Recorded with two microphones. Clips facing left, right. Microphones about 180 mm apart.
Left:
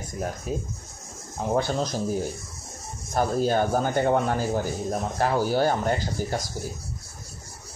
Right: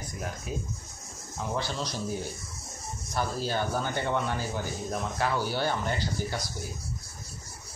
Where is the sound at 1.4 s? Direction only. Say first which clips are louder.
Left 8 dB; 50° left (ahead or behind).